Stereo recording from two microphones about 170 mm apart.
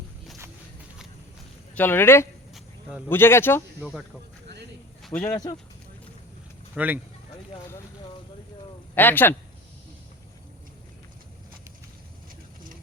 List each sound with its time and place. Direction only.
1.7 s speech: 10° left (ahead or behind)
5.0 s speech: 5° left (ahead or behind)
5.3 s speech: 20° left (ahead or behind)
6.7 s speech: 10° right (ahead or behind)
9.0 s speech: 10° left (ahead or behind)